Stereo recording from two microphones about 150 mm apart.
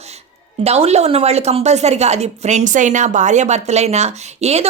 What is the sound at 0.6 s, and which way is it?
A woman's voice, 45° right (ahead or behind).